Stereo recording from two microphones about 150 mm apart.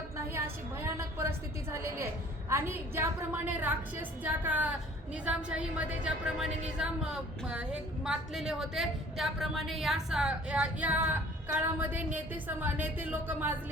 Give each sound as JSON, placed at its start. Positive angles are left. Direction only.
{"t": 0.3, "sound": "a woman's voice", "side_deg": -15}